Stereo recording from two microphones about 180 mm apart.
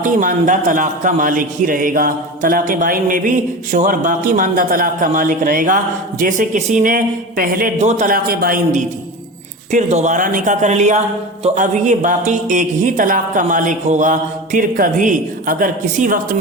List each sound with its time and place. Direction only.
0.0 s a man's voice: 45° right (ahead or behind)